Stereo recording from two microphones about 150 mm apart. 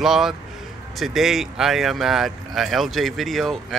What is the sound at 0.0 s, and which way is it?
Speech, 5° right (ahead or behind).